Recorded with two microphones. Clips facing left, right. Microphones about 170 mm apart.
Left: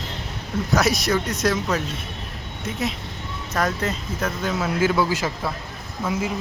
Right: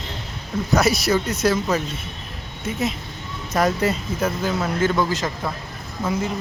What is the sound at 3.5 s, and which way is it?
Speech, 10° right (ahead or behind).